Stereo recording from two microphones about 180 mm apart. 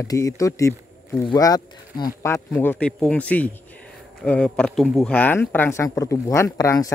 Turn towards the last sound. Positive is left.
turn(degrees=15)  # may be behind; listen again after turning